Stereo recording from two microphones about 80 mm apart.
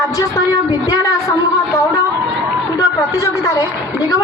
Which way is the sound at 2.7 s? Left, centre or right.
Left.